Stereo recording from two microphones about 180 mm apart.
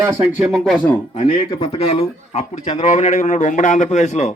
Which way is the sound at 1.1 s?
30° left (ahead or behind).